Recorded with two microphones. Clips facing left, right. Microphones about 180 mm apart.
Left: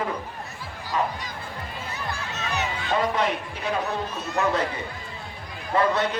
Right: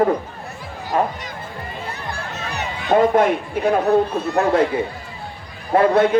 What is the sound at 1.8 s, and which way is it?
Speech, 60° right (ahead or behind).